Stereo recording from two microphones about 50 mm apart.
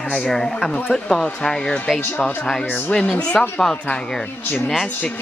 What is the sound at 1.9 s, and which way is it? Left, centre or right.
Speech, left.